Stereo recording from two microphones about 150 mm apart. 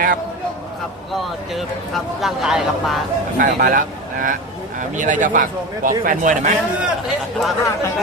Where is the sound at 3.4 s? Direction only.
75° right (ahead or behind).